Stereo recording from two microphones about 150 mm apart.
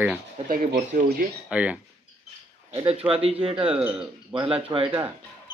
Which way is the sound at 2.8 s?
40° right (ahead or behind).